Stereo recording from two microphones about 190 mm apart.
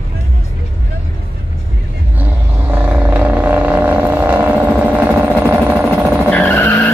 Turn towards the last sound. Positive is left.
turn(degrees=10)  # may be behind; listen again after turning